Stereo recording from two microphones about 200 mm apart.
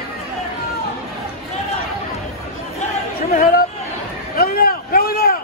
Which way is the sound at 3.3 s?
45° left (ahead or behind).